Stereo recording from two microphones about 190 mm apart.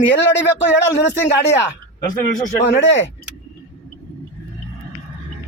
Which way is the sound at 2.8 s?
80° left.